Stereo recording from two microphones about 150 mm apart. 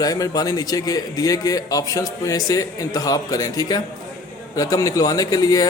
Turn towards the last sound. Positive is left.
turn(degrees=25)  # may be behind; listen again after turning